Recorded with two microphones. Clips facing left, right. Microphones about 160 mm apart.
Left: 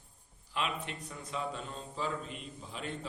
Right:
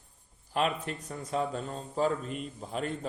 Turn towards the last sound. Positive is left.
turn(degrees=-45)  # may be behind; listen again after turning